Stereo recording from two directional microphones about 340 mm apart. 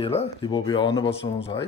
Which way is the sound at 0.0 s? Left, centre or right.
Centre.